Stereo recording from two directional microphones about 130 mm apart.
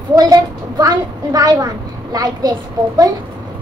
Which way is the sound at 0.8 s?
30° right (ahead or behind).